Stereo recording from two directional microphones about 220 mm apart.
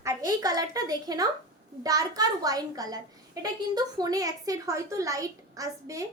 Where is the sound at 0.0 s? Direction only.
15° right (ahead or behind).